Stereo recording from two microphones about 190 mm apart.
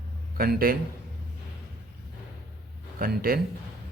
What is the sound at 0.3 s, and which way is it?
Speech, 50° right (ahead or behind).